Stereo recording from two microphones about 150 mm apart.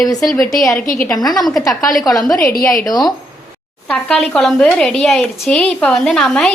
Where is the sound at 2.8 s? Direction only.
25° left (ahead or behind).